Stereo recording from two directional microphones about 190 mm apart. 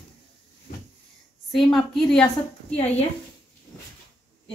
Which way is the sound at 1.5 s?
Centre (ahead or behind).